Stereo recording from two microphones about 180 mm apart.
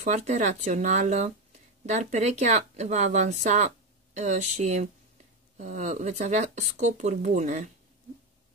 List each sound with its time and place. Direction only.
0.0 s speech: 40° right (ahead or behind)